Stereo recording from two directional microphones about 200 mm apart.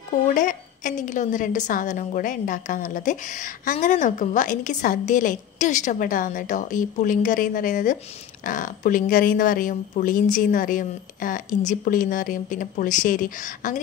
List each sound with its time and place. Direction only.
0.3 s a woman's voice: 40° left (ahead or behind)